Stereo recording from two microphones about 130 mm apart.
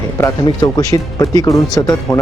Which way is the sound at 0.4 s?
30° left (ahead or behind).